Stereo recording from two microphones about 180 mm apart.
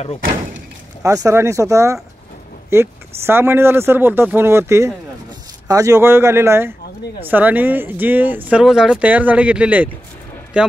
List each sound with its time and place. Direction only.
1.0 s a man's voice: 20° right (ahead or behind)